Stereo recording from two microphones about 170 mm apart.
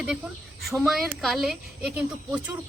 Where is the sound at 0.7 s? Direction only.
Centre (ahead or behind).